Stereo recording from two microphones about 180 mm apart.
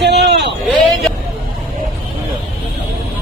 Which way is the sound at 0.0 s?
70° right (ahead or behind).